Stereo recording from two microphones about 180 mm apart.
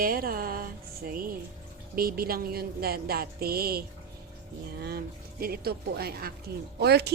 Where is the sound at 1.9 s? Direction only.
55° right (ahead or behind).